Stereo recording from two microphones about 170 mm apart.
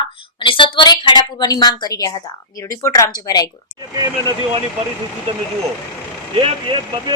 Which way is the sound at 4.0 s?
25° right (ahead or behind).